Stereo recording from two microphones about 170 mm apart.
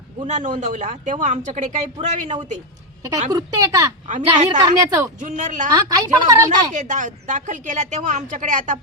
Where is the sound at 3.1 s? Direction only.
20° right (ahead or behind).